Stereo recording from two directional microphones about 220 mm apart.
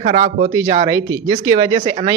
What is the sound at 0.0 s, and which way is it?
Speech, 30° right (ahead or behind).